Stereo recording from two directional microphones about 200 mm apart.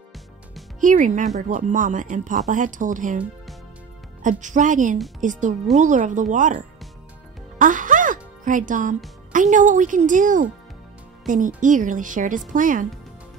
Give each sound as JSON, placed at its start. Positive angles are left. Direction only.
{"t": 0.7, "sound": "speech", "side_deg": -40}
{"t": 4.2, "sound": "speech", "side_deg": -40}
{"t": 7.5, "sound": "music", "side_deg": -40}
{"t": 9.3, "sound": "speech", "side_deg": -40}